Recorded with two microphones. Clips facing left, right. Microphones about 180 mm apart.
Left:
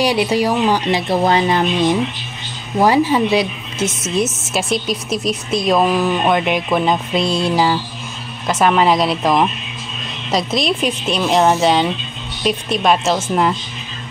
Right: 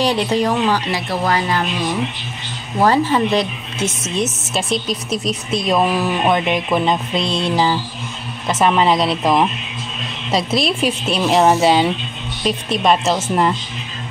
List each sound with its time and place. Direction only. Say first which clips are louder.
0.0 s speech: left 1 dB; 10° left (ahead or behind)
2.8 s a woman's voice: left 1 dB; 10° left (ahead or behind)